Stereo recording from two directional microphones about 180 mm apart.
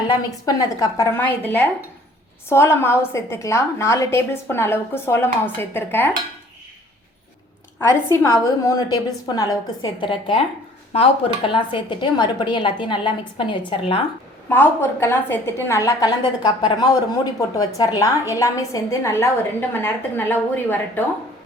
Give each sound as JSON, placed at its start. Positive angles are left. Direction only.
{"t": 0.1, "sound": "a woman's voice", "side_deg": 20}
{"t": 7.8, "sound": "a woman's voice", "side_deg": 15}
{"t": 14.5, "sound": "a woman's voice", "side_deg": 10}